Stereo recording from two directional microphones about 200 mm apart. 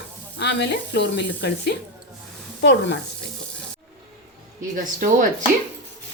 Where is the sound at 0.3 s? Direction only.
60° left (ahead or behind).